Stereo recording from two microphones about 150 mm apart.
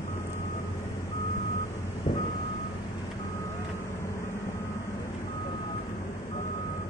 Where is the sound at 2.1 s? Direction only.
30° left (ahead or behind).